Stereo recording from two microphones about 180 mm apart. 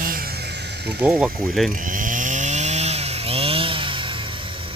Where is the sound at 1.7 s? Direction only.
50° right (ahead or behind).